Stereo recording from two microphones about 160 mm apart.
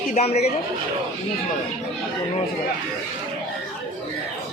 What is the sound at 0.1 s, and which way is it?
Speech, 40° left (ahead or behind).